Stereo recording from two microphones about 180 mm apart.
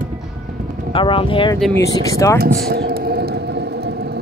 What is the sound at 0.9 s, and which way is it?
Speech, 30° left (ahead or behind).